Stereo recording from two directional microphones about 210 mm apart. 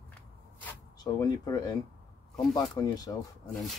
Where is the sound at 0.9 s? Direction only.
20° left (ahead or behind).